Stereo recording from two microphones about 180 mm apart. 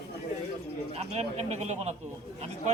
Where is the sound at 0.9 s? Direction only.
35° right (ahead or behind).